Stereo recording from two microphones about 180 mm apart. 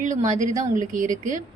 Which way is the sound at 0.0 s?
45° right (ahead or behind).